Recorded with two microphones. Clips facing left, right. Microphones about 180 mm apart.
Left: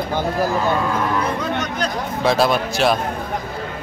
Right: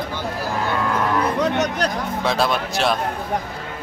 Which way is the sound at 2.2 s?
Centre (ahead or behind).